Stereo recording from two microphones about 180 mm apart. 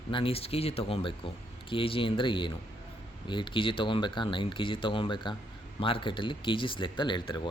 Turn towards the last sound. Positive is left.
turn(degrees=25)  # may be behind; listen again after turning